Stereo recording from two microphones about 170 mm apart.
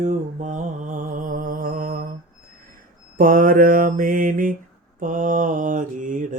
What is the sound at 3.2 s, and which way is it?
Speech, 55° right (ahead or behind).